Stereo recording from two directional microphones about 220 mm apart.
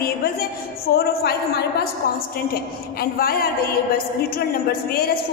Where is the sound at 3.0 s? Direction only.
45° left (ahead or behind).